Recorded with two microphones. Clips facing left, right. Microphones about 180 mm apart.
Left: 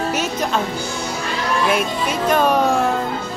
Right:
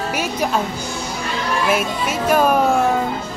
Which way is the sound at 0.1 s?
10° right (ahead or behind).